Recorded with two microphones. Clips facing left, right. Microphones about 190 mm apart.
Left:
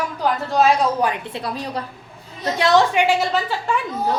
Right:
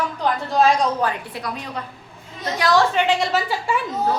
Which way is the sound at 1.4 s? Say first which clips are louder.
Left 4 dB; 35° left (ahead or behind).